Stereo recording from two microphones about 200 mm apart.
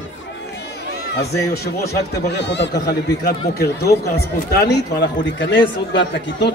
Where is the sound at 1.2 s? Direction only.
55° left (ahead or behind).